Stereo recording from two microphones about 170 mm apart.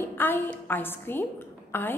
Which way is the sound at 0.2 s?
10° left (ahead or behind).